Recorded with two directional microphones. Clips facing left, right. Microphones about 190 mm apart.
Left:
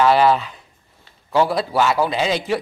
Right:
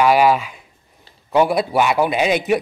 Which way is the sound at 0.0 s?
10° right (ahead or behind).